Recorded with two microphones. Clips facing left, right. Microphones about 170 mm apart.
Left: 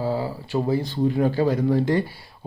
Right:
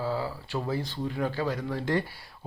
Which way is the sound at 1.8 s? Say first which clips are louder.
Left 6 dB; 10° left (ahead or behind).